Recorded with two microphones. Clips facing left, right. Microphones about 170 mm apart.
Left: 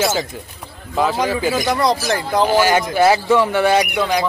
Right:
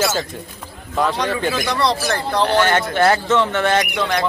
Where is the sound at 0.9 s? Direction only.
5° left (ahead or behind).